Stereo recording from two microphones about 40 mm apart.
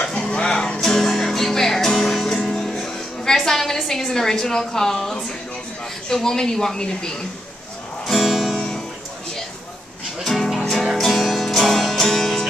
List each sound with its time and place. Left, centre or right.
0.0 s music: centre
6.0 s speech: centre
8.1 s music: centre
8.5 s music: centre
10.2 s music: centre